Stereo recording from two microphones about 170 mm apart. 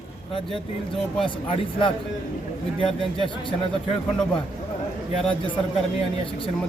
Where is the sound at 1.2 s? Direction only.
30° left (ahead or behind).